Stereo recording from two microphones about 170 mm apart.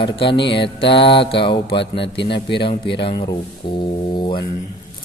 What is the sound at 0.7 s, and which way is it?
Mantra, 30° left (ahead or behind).